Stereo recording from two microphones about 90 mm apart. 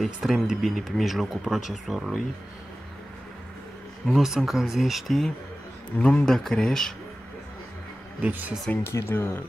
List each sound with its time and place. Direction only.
0.0 s speech: centre (ahead or behind)
4.1 s speech: 5° right (ahead or behind)
5.9 s speech: 10° left (ahead or behind)
8.2 s speech: 20° right (ahead or behind)
8.8 s speech: 30° left (ahead or behind)